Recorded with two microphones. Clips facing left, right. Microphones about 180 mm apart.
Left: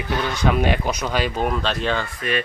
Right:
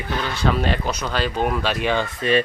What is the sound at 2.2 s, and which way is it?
Speech, 30° right (ahead or behind).